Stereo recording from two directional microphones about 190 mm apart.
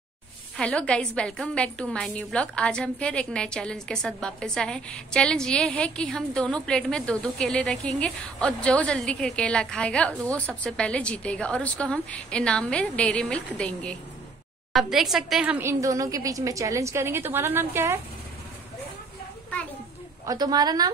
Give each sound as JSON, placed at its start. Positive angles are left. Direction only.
{"t": 0.6, "sound": "a woman's voice", "side_deg": 5}
{"t": 20.2, "sound": "a woman's voice", "side_deg": -20}